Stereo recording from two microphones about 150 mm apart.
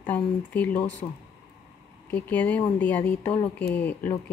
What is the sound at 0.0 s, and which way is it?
Speech, 10° left (ahead or behind).